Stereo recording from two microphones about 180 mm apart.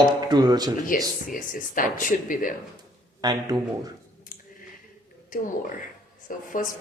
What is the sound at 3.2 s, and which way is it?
Speech, 25° right (ahead or behind).